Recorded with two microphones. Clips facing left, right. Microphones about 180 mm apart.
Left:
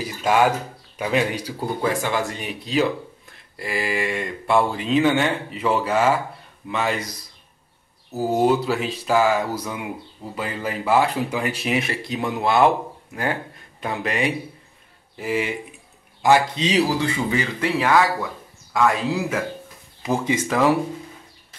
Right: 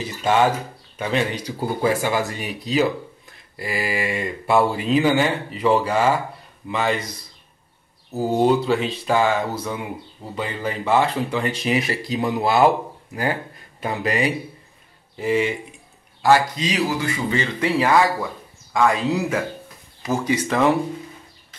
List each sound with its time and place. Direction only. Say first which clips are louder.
0.0 s speech: even; 10° left (ahead or behind)
1.8 s speech: right 2 dB; 5° right (ahead or behind)
8.1 s speech: right 1 dB; 5° left (ahead or behind)
16.2 s a man's voice: even; 15° left (ahead or behind)
16.5 s speech: left 3 dB; 30° left (ahead or behind)
17.3 s speech: right 1 dB; 5° left (ahead or behind)
20.0 s speech: even; 15° left (ahead or behind)
20.4 s speech: even; 5° left (ahead or behind)